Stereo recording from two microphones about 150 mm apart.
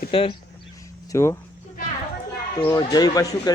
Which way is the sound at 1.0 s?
20° left (ahead or behind).